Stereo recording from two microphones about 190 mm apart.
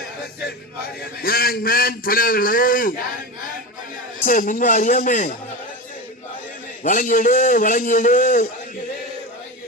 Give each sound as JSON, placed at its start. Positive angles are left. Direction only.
{"t": 1.2, "sound": "a man's voice", "side_deg": 50}
{"t": 4.3, "sound": "a man's voice", "side_deg": 45}
{"t": 6.8, "sound": "a man's voice", "side_deg": 45}